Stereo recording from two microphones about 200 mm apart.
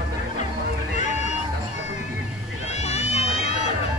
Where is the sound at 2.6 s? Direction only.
30° left (ahead or behind).